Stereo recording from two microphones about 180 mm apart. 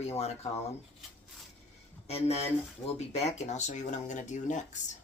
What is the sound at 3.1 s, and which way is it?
Speech, 40° left (ahead or behind).